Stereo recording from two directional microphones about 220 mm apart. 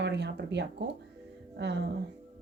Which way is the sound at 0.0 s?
50° right (ahead or behind).